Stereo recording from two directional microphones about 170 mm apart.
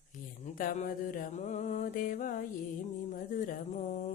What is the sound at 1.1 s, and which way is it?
Speech, 45° left (ahead or behind).